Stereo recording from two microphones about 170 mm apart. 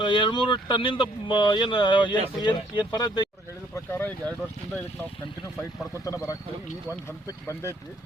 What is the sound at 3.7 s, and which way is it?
Speech, 10° left (ahead or behind).